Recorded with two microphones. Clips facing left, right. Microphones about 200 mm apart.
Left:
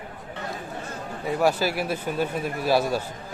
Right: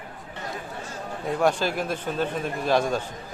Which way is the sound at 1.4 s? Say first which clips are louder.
Left 1 dB; 5° left (ahead or behind).